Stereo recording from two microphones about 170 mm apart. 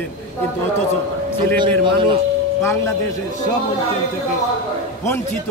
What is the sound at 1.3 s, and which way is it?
Speech, 30° right (ahead or behind).